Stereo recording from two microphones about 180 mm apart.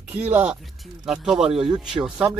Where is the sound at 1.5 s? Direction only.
30° right (ahead or behind).